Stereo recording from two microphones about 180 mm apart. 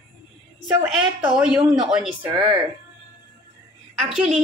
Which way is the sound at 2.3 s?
25° right (ahead or behind).